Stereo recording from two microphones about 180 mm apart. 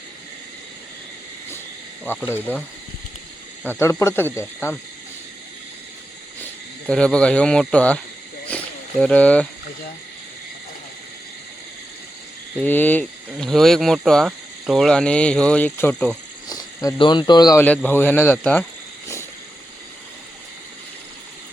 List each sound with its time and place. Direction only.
2.0 s speech: 10° left (ahead or behind)
6.8 s speech: 5° left (ahead or behind)
8.4 s wild animals: 5° left (ahead or behind)
12.5 s speech: 10° left (ahead or behind)
16.5 s speech: 25° left (ahead or behind)
17.6 s speech: 10° left (ahead or behind)